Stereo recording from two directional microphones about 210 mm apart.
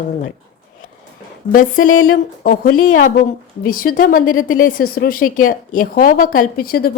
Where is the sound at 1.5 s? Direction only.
40° left (ahead or behind).